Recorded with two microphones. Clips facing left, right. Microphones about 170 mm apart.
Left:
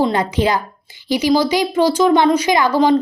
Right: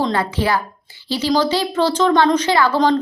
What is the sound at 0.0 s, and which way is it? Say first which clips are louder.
A woman's voice: left 3 dB; 20° left (ahead or behind).